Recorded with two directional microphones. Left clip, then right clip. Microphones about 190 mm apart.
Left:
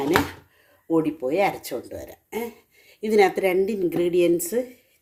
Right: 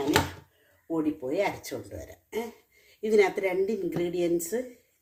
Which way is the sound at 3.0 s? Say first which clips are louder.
Left 5 dB; 45° left (ahead or behind).